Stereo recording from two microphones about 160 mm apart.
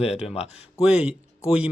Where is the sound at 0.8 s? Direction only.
5° right (ahead or behind).